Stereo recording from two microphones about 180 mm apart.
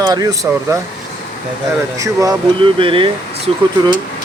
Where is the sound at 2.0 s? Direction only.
20° right (ahead or behind).